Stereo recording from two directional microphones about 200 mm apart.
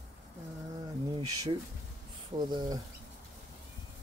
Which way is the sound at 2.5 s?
20° right (ahead or behind).